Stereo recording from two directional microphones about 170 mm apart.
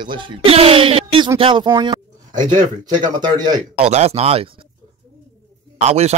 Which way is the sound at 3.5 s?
40° right (ahead or behind).